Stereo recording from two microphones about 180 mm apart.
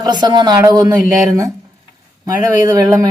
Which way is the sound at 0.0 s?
20° right (ahead or behind).